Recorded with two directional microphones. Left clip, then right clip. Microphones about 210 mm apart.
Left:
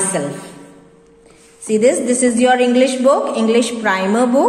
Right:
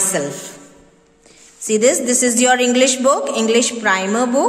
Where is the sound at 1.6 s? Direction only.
20° right (ahead or behind).